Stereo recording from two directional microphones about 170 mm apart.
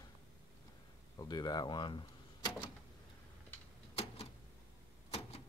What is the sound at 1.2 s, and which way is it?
Speech, 25° left (ahead or behind).